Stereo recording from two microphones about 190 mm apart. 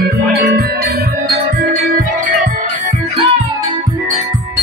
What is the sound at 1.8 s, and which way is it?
Music, 50° right (ahead or behind).